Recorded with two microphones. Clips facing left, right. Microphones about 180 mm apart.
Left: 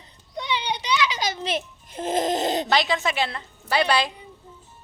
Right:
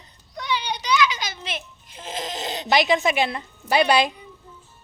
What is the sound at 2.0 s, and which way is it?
Music, 50° left (ahead or behind).